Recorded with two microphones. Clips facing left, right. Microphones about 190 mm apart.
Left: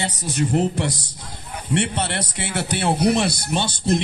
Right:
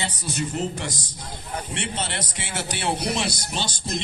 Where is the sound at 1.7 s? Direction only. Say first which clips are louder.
Left 10 dB; 60° left (ahead or behind).